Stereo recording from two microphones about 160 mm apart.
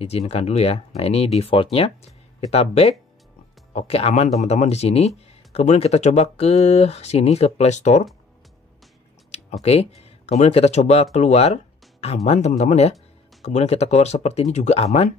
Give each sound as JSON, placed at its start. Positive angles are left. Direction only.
{"t": 0.3, "sound": "speech", "side_deg": 40}
{"t": 9.3, "sound": "speech", "side_deg": 40}